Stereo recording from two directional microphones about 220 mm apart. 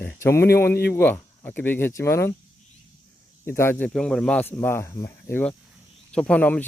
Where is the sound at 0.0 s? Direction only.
10° left (ahead or behind).